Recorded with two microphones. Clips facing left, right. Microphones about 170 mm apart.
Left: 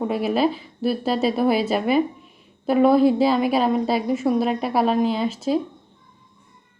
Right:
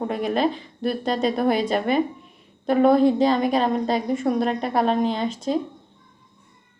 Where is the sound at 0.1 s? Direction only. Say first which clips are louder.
Left 1 dB; 5° left (ahead or behind).